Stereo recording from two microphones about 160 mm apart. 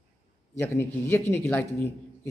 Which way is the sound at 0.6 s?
15° left (ahead or behind).